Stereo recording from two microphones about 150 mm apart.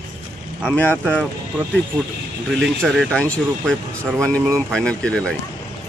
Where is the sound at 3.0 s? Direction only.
5° left (ahead or behind).